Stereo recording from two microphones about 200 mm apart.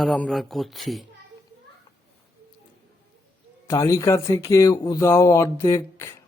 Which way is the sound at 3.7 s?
15° left (ahead or behind).